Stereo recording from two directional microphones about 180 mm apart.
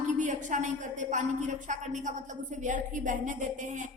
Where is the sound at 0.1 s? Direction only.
40° right (ahead or behind).